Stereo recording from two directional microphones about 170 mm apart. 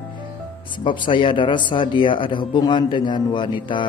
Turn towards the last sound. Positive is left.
turn(degrees=30)  # may be behind; listen again after turning